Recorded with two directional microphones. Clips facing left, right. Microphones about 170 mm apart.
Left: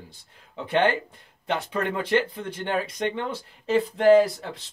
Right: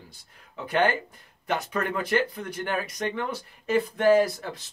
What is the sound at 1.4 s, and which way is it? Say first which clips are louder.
Speech: left 1 dB; 25° left (ahead or behind).